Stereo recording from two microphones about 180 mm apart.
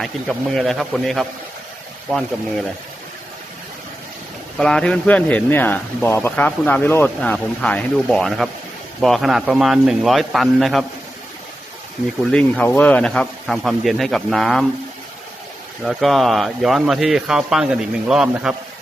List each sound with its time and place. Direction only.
0.0 s speech: centre (ahead or behind)
4.5 s speech: 5° left (ahead or behind)
12.3 s speech: 5° left (ahead or behind)
15.8 s speech: centre (ahead or behind)